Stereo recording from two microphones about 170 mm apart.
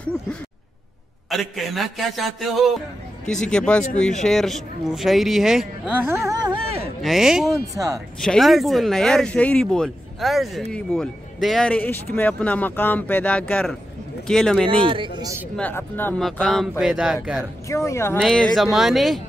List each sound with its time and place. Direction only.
1.3 s speech: centre (ahead or behind)
6.0 s speech: 15° right (ahead or behind)
6.6 s speech: 35° right (ahead or behind)
7.0 s speech: centre (ahead or behind)
7.5 s speech: 20° right (ahead or behind)
8.2 s speech: centre (ahead or behind)
14.7 s speech: 30° right (ahead or behind)
15.5 s speech: 10° left (ahead or behind)
17.6 s speech: 15° left (ahead or behind)
18.1 s speech: centre (ahead or behind)